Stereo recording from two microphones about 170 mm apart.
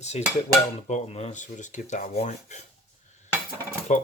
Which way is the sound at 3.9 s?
45° left (ahead or behind).